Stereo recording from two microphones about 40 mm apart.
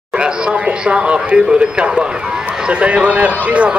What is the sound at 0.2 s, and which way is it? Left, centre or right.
Speech, right.